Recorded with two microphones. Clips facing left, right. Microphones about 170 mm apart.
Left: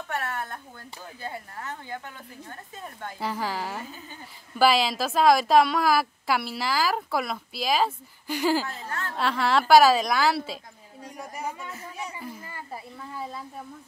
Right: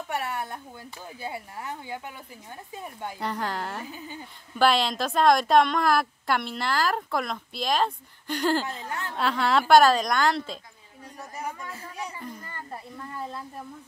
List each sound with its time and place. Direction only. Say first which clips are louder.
0.1 s a sound: right 1 dB; 15° right (ahead or behind)
1.2 s speech: right 1 dB; 10° right (ahead or behind)
3.2 s a woman's voice: left 1 dB; 5° left (ahead or behind)
3.8 s speech: right 3 dB; 15° right (ahead or behind)
4.6 s a woman's voice: left 1 dB; 5° left (ahead or behind)
8.8 s speech: even; 15° right (ahead or behind)
9.1 s a woman's voice: even; centre (ahead or behind)